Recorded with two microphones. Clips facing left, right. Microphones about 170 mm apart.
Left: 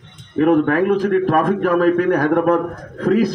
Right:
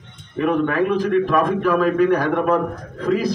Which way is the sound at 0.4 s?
50° left (ahead or behind).